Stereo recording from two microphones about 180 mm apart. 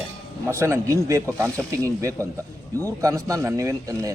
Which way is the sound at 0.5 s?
15° right (ahead or behind).